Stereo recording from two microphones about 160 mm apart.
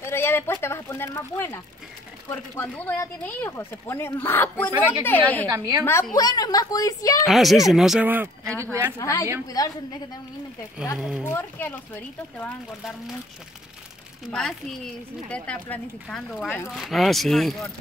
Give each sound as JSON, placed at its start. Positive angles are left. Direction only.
{"t": 0.0, "sound": "a sound", "side_deg": 15}
{"t": 2.2, "sound": "speech", "side_deg": 15}
{"t": 5.5, "sound": "a woman's voice", "side_deg": -20}
{"t": 6.1, "sound": "a woman's voice", "side_deg": 25}
{"t": 7.2, "sound": "speech", "side_deg": 0}
{"t": 8.9, "sound": "a woman's voice", "side_deg": 20}
{"t": 11.0, "sound": "speech", "side_deg": -5}
{"t": 11.2, "sound": "speech", "side_deg": 10}
{"t": 14.2, "sound": "speech", "side_deg": 0}
{"t": 16.7, "sound": "speech", "side_deg": 0}